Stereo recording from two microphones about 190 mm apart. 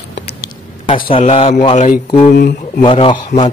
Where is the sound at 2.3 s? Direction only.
60° left (ahead or behind).